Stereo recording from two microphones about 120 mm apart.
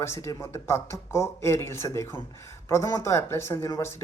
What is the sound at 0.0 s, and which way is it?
Speech, 20° left (ahead or behind).